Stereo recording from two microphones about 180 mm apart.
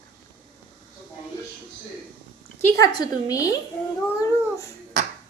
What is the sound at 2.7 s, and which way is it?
Speech, 20° left (ahead or behind).